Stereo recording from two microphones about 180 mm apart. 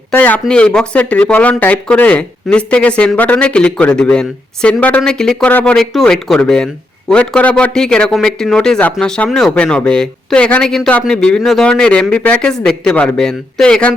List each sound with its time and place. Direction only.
0.1 s speech: 10° left (ahead or behind)